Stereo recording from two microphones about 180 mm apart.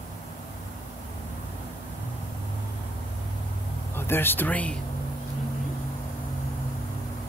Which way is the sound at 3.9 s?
10° left (ahead or behind).